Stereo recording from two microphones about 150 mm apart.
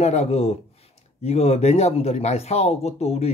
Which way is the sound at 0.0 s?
50° left (ahead or behind).